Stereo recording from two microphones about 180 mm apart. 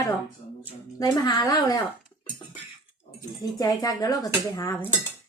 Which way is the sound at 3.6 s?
20° left (ahead or behind).